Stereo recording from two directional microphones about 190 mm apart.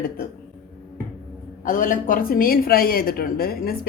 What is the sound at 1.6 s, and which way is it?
Speech, 45° left (ahead or behind).